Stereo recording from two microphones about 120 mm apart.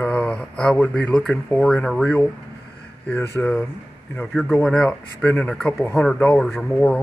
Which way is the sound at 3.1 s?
20° left (ahead or behind).